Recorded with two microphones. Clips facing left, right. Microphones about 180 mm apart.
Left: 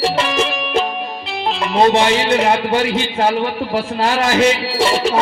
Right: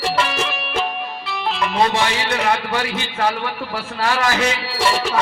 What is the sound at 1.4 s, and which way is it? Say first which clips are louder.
Speech: left 5 dB; 25° left (ahead or behind).